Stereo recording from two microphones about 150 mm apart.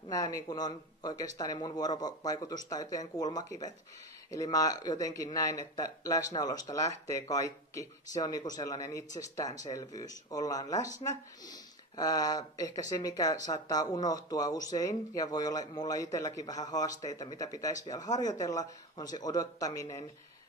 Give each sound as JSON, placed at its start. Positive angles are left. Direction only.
{"t": 0.1, "sound": "speech", "side_deg": 25}